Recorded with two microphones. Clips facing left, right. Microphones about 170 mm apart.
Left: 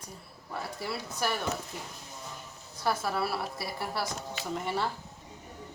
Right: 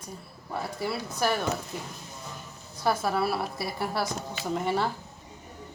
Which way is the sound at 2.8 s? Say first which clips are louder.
Right 4 dB; 20° right (ahead or behind).